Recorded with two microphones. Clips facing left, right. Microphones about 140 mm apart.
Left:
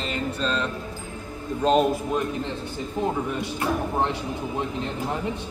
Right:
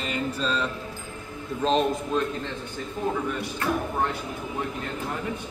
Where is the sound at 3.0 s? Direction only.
20° left (ahead or behind).